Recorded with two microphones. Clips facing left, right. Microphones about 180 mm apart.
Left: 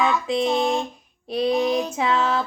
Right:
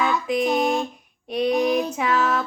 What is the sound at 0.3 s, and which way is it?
Child singing, 25° left (ahead or behind).